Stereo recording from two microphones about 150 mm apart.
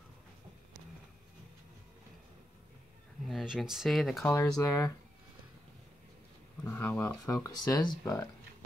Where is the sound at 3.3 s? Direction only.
Centre (ahead or behind).